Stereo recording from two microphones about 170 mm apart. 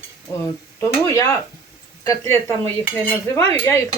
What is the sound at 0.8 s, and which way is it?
Speech, 20° left (ahead or behind).